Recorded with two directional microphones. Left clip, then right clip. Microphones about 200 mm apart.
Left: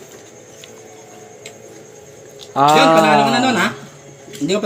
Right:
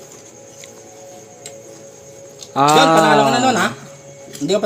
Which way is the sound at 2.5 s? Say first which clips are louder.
Left 1 dB; 20° right (ahead or behind).